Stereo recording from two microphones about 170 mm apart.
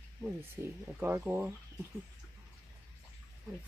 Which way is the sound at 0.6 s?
10° right (ahead or behind).